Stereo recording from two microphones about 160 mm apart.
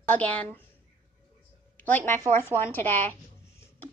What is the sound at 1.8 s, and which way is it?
A woman's voice, 10° left (ahead or behind).